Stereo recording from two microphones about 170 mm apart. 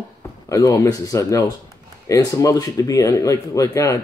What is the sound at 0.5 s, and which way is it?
Speech, 20° left (ahead or behind).